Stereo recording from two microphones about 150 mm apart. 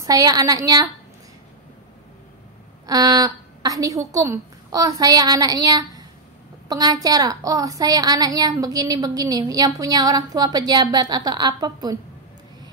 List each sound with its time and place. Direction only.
0.0 s a woman's voice: 25° right (ahead or behind)
2.9 s a woman's voice: 25° right (ahead or behind)